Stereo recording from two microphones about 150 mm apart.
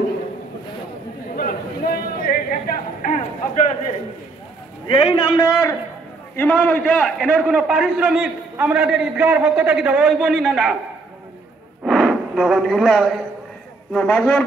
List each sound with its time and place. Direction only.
1.3 s a sound: 75° left (ahead or behind)
4.8 s a man's voice: 35° left (ahead or behind)
6.3 s a man's voice: 10° left (ahead or behind)
7.2 s a man's voice: 5° right (ahead or behind)
11.8 s a sound: centre (ahead or behind)
13.9 s a man's voice: 10° left (ahead or behind)